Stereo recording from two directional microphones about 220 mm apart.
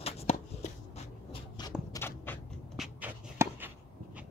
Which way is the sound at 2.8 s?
5° right (ahead or behind).